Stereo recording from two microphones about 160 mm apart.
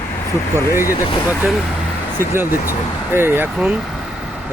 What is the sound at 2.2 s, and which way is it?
Speech, 15° right (ahead or behind).